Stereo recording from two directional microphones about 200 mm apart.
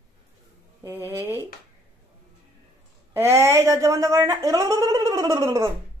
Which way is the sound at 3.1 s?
10° right (ahead or behind).